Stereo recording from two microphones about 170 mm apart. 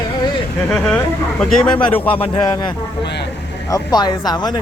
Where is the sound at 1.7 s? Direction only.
30° left (ahead or behind).